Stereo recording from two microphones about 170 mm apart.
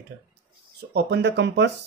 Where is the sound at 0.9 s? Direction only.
85° right.